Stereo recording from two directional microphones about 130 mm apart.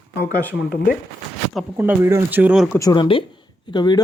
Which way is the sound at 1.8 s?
15° right (ahead or behind).